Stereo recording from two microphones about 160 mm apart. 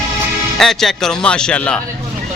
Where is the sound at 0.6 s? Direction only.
Centre (ahead or behind).